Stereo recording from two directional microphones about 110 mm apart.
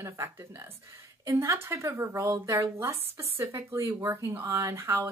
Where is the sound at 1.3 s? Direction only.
20° right (ahead or behind).